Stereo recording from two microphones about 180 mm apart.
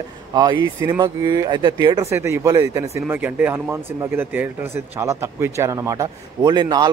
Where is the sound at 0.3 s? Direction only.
25° right (ahead or behind).